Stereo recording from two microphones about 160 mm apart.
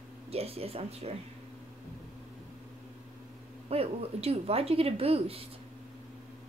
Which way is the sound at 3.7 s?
40° right (ahead or behind).